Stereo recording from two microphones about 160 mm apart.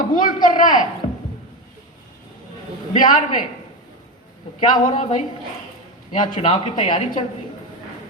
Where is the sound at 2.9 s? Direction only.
55° left (ahead or behind).